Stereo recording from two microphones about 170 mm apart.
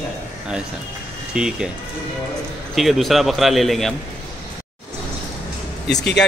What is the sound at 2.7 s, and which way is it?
A man's voice, centre (ahead or behind).